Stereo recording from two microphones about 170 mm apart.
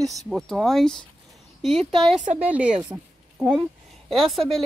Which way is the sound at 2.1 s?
45° right (ahead or behind).